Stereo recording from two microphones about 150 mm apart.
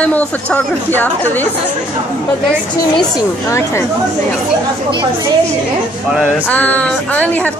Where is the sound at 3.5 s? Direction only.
20° left (ahead or behind).